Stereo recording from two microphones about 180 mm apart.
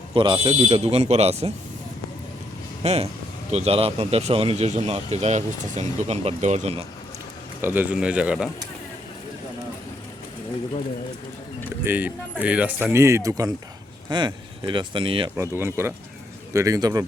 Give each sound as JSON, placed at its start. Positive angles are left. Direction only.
{"t": 0.1, "sound": "speech", "side_deg": -25}
{"t": 2.8, "sound": "speech", "side_deg": -35}
{"t": 7.6, "sound": "speech", "side_deg": -10}
{"t": 11.9, "sound": "speech", "side_deg": -10}
{"t": 15.4, "sound": "speech", "side_deg": -15}